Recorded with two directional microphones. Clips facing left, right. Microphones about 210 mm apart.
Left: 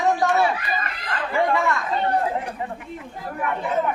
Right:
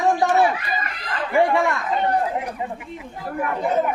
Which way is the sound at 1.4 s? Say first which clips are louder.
Right 2 dB; 15° right (ahead or behind).